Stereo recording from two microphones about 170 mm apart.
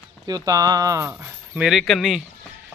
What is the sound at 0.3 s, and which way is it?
Speech, 20° right (ahead or behind).